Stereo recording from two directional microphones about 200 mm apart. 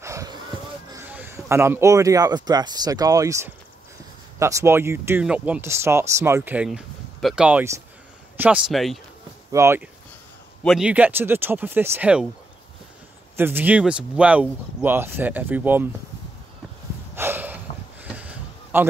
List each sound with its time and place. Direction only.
0.0 s a sound: 15° right (ahead or behind)
0.9 s a man's voice: 10° right (ahead or behind)
9.5 s speech: 15° right (ahead or behind)
10.6 s speech: centre (ahead or behind)
13.4 s speech: 10° right (ahead or behind)
17.1 s a sound: 10° right (ahead or behind)